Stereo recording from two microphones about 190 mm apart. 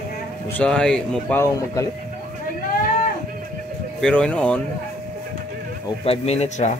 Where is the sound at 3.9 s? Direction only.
5° left (ahead or behind).